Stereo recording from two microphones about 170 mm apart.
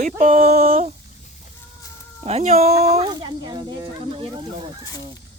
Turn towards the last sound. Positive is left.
turn(degrees=-30)  # may be behind; listen again after turning